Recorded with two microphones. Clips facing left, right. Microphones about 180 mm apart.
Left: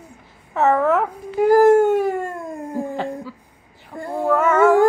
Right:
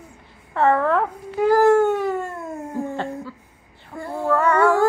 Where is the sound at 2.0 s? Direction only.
50° left (ahead or behind).